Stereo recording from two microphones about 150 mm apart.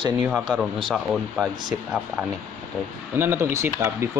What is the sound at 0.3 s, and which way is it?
Speech, centre (ahead or behind).